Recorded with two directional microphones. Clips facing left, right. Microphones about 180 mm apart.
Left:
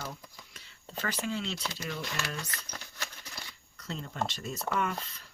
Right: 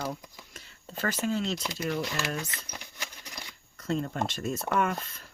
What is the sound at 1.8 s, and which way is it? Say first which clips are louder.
Speech: right 7 dB; 45° right (ahead or behind).